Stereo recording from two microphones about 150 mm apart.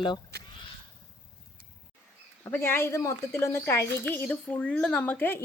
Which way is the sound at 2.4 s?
15° left (ahead or behind).